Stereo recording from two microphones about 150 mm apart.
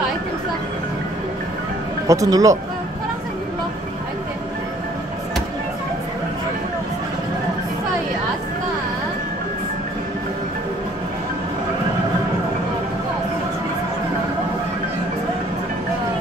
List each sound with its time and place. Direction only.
2.0 s speech: 20° right (ahead or behind)